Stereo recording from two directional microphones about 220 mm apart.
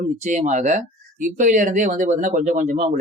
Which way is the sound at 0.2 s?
35° right (ahead or behind).